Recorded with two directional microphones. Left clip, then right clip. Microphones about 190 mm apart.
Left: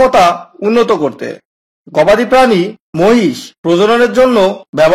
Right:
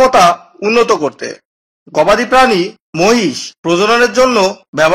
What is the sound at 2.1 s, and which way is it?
Speech, 40° left (ahead or behind).